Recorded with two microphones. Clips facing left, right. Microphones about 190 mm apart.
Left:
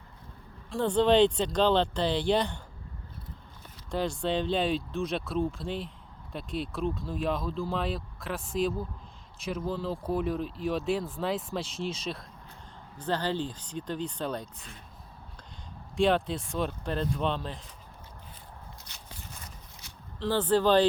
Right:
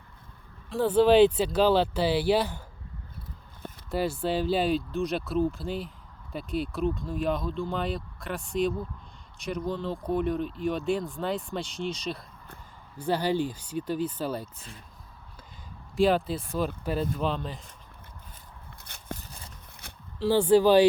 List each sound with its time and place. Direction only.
0.7 s speech: 5° right (ahead or behind)
3.9 s speech: 5° right (ahead or behind)
13.0 s speech: 10° right (ahead or behind)
16.0 s speech: 5° right (ahead or behind)
18.9 s a sound: 50° right (ahead or behind)
20.1 s speech: 10° right (ahead or behind)